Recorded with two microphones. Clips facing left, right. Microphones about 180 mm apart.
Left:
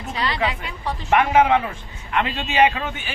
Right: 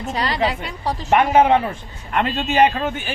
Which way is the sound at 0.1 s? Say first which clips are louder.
Right 2 dB; 40° right (ahead or behind).